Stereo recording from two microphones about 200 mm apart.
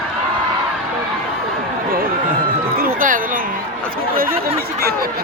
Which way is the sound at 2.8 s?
45° right (ahead or behind).